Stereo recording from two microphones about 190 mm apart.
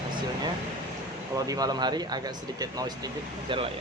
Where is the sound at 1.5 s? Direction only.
20° right (ahead or behind).